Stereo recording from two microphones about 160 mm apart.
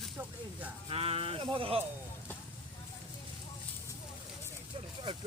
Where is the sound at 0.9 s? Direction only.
35° right (ahead or behind).